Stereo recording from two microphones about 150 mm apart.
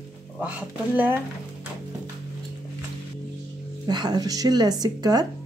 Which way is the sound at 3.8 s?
25° right (ahead or behind).